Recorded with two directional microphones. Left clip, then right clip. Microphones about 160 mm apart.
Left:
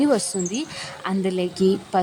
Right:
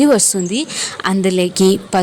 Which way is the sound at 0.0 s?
25° right (ahead or behind).